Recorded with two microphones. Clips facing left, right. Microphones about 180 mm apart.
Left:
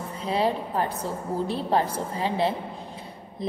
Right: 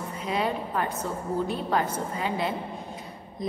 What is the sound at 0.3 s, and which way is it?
A woman's voice, 30° left (ahead or behind).